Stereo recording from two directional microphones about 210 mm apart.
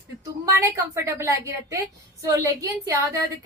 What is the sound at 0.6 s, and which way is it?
A woman's voice, 15° right (ahead or behind).